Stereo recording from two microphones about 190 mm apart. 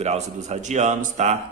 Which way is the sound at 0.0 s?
35° right (ahead or behind).